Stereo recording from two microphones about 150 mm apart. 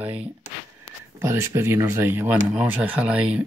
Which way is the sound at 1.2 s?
20° right (ahead or behind).